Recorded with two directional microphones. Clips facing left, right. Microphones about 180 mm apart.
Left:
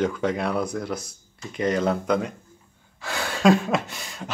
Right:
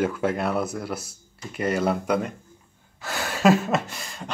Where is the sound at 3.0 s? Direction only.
5° right (ahead or behind).